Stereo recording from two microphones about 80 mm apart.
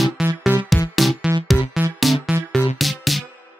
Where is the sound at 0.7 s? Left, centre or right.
Centre.